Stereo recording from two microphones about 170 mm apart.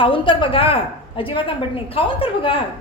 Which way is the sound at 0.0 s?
30° left (ahead or behind).